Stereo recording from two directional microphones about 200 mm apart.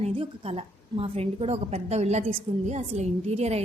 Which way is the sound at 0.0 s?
30° right (ahead or behind).